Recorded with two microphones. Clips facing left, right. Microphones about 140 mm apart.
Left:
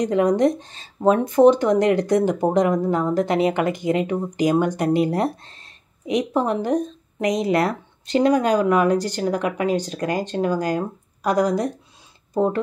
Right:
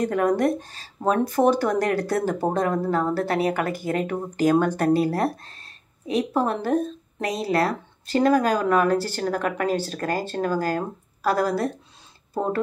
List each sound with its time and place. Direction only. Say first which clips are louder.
0.0 s speech: left 3 dB; 20° left (ahead or behind)